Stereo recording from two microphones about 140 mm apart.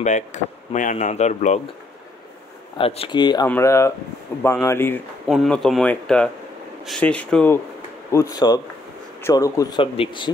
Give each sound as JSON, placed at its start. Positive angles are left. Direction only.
{"t": 0.0, "sound": "speech", "side_deg": 60}
{"t": 2.8, "sound": "speech", "side_deg": 45}
{"t": 3.2, "sound": "speech", "side_deg": 30}
{"t": 3.4, "sound": "speech", "side_deg": 15}
{"t": 5.3, "sound": "speech", "side_deg": 0}
{"t": 8.1, "sound": "speech", "side_deg": 25}